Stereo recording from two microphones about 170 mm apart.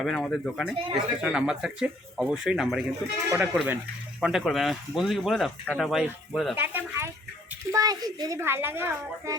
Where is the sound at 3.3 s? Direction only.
10° right (ahead or behind).